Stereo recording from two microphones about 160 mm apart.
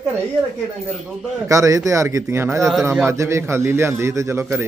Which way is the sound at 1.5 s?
20° right (ahead or behind).